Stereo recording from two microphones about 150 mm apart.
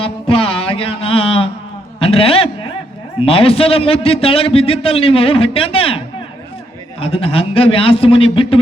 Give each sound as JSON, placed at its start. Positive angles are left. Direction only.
{"t": 0.0, "sound": "music", "side_deg": 40}
{"t": 2.0, "sound": "a man's voice", "side_deg": 40}
{"t": 7.0, "sound": "a man's voice", "side_deg": 40}